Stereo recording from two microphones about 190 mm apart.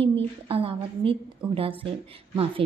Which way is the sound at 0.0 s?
30° right (ahead or behind).